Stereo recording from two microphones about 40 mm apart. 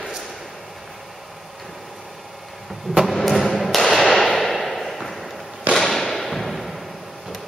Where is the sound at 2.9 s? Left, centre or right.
Centre.